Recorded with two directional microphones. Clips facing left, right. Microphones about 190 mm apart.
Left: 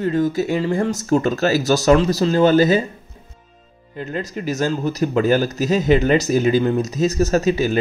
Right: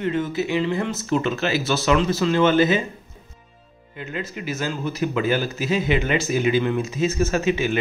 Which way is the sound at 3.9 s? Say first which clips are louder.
Left 5 dB; 40° left (ahead or behind).